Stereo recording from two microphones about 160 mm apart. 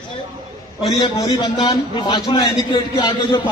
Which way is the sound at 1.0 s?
25° left (ahead or behind).